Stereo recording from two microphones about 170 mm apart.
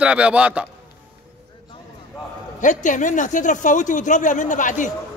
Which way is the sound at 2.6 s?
45° left (ahead or behind).